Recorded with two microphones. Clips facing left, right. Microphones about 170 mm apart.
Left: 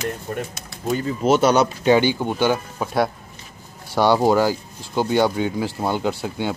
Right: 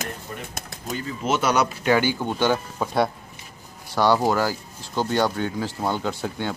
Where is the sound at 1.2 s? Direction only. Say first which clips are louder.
Left 5 dB; 35° left (ahead or behind).